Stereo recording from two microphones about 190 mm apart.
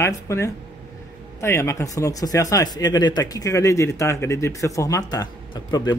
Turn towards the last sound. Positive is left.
turn(degrees=20)  # may be behind; listen again after turning